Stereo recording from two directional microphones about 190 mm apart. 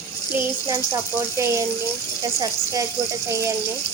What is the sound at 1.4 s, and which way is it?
Speech, 15° right (ahead or behind).